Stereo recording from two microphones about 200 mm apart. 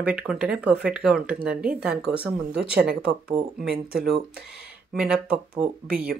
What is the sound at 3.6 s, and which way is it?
Speech, 50° right (ahead or behind).